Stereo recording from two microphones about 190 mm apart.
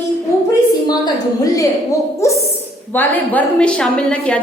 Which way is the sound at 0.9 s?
20° left (ahead or behind).